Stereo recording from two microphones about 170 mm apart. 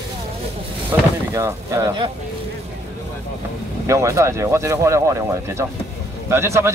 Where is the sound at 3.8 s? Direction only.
15° right (ahead or behind).